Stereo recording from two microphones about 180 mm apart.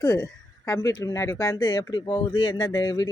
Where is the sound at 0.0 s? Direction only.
15° left (ahead or behind).